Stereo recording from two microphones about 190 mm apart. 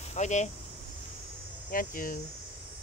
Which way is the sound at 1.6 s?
45° left (ahead or behind).